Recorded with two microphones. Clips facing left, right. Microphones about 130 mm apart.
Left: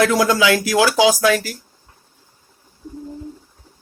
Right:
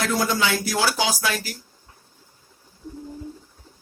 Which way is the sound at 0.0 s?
90° left.